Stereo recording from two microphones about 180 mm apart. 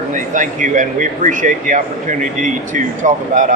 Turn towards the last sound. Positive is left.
turn(degrees=-45)  # may be behind; listen again after turning